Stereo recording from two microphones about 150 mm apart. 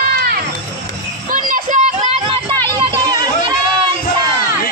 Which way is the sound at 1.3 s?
60° right (ahead or behind).